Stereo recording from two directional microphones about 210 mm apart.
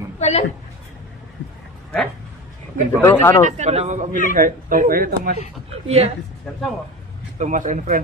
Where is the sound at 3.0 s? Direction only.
10° left (ahead or behind).